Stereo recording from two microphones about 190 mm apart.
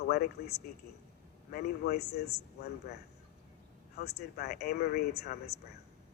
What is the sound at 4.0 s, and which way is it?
Speech, 60° left (ahead or behind).